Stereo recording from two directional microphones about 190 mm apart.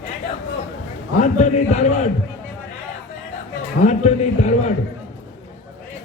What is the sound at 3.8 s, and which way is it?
Speech, 40° left (ahead or behind).